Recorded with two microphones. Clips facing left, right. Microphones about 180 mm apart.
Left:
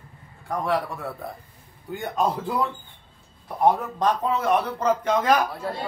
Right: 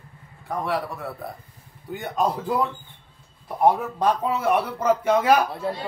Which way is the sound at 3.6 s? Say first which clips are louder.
Right 1 dB; 10° right (ahead or behind).